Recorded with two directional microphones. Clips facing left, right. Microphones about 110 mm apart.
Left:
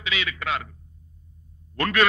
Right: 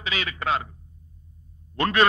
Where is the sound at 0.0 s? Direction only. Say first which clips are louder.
Right 1 dB; 35° right (ahead or behind).